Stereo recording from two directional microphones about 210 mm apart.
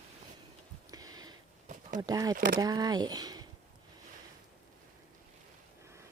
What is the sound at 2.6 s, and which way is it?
Speech, 15° right (ahead or behind).